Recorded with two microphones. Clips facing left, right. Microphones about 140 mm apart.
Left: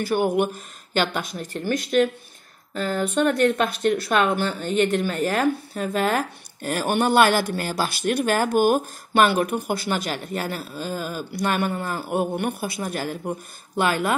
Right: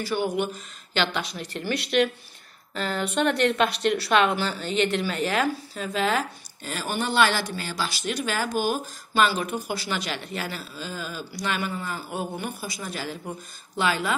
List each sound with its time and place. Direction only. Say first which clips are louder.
0.0 s speech: left 5 dB; 50° left (ahead or behind)
2.8 s speech: left 3 dB; 45° left (ahead or behind)